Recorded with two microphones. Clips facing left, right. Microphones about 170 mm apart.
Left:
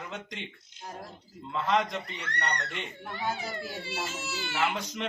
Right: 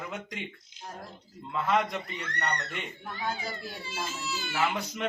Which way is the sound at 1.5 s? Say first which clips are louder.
Even; 5° right (ahead or behind).